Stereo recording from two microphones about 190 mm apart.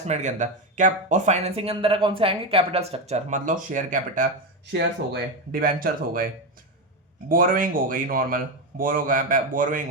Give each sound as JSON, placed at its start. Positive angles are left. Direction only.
{"t": 0.0, "sound": "speech", "side_deg": -40}
{"t": 7.3, "sound": "speech", "side_deg": -45}